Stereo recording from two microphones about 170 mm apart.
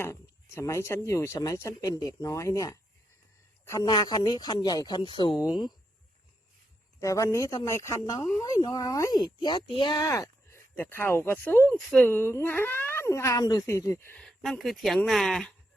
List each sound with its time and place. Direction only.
0.0 s speech: 15° left (ahead or behind)
7.0 s speech: 20° left (ahead or behind)
14.2 s speech: 5° left (ahead or behind)